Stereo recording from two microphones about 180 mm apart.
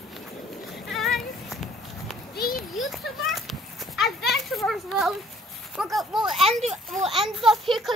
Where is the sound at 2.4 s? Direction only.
55° left (ahead or behind).